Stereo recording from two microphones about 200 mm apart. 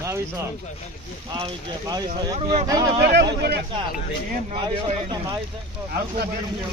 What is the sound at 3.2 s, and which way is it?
Speech, 55° right (ahead or behind).